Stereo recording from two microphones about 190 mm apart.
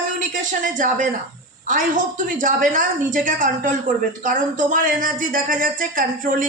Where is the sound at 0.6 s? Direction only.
45° right (ahead or behind).